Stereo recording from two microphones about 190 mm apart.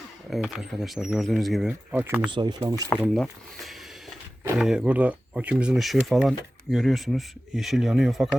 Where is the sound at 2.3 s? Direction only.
20° right (ahead or behind).